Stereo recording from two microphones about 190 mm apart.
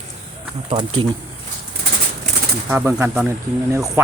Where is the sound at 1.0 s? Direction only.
25° right (ahead or behind).